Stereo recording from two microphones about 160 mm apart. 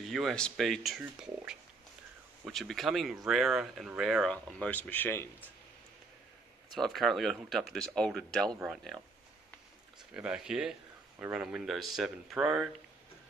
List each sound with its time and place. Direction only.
0.0 s speech: centre (ahead or behind)
6.7 s speech: centre (ahead or behind)
10.1 s speech: 5° right (ahead or behind)